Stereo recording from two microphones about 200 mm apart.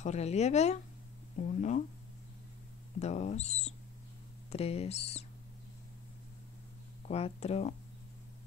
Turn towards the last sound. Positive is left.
turn(degrees=30)  # may be behind; listen again after turning